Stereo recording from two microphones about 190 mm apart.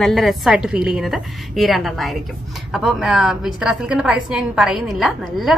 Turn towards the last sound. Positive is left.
turn(degrees=0)  # may be behind; listen again after turning